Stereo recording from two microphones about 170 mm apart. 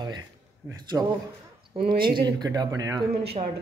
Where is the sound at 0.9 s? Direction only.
10° right (ahead or behind).